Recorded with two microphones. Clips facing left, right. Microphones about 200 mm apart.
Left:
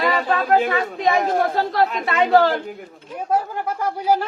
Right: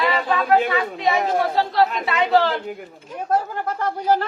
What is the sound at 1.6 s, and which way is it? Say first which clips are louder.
Speech: right 1 dB; 50° left (ahead or behind).